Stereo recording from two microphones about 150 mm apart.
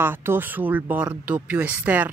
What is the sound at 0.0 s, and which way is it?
Speech, 15° right (ahead or behind).